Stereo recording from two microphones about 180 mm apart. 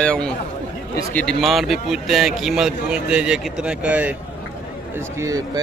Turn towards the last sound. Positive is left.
turn(degrees=-20)  # may be behind; listen again after turning